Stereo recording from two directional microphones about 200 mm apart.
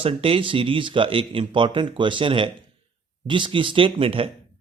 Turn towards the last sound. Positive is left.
turn(degrees=-30)  # may be behind; listen again after turning